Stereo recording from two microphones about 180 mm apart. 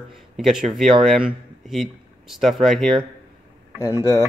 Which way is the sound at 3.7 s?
15° left (ahead or behind).